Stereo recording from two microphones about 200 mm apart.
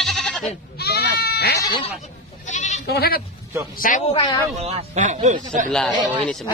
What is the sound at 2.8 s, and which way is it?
Speech, 50° left (ahead or behind).